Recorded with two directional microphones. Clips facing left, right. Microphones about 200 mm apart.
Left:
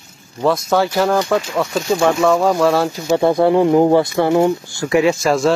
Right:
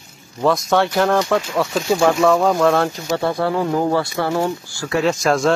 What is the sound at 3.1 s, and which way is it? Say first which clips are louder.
Speech: left 8 dB; 20° left (ahead or behind).